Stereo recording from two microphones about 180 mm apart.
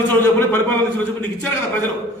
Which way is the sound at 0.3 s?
10° left (ahead or behind).